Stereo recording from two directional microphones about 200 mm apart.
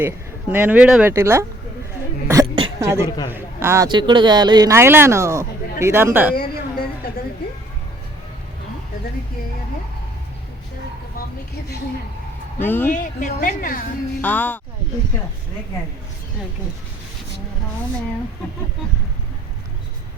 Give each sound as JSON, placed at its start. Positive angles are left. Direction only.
{"t": 0.5, "sound": "speech", "side_deg": -10}
{"t": 2.2, "sound": "a sound", "side_deg": -15}
{"t": 3.0, "sound": "a man's voice", "side_deg": 20}
{"t": 3.2, "sound": "speech", "side_deg": -10}
{"t": 6.3, "sound": "a sound", "side_deg": 50}
{"t": 12.5, "sound": "speech", "side_deg": 10}
{"t": 12.9, "sound": "a woman's voice", "side_deg": 40}
{"t": 14.2, "sound": "speech", "side_deg": 10}